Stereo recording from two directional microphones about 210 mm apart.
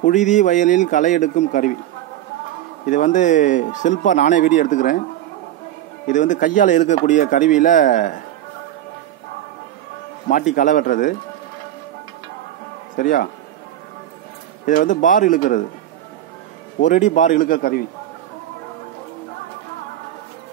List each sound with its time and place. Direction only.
0.0 s speech: 35° left (ahead or behind)
2.9 s speech: 35° left (ahead or behind)
6.0 s speech: 35° left (ahead or behind)
10.2 s speech: 40° left (ahead or behind)
12.9 s speech: 40° left (ahead or behind)
14.7 s speech: 35° left (ahead or behind)
16.8 s speech: 35° left (ahead or behind)